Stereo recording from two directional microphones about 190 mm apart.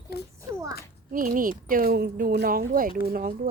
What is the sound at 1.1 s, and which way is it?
Speech, 45° right (ahead or behind).